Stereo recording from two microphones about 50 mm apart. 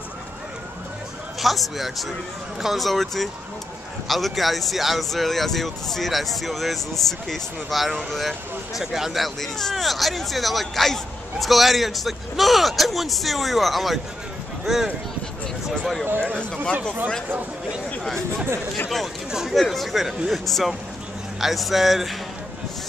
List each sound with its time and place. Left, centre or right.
1.4 s speech: centre
19.5 s speech: centre